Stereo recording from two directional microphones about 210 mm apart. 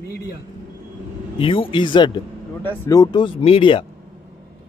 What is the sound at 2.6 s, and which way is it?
Speech, 10° left (ahead or behind).